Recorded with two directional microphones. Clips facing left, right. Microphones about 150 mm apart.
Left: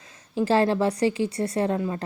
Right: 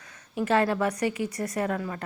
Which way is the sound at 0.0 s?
30° left (ahead or behind).